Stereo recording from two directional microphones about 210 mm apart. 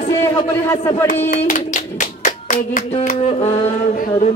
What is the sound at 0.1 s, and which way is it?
Music, 15° left (ahead or behind).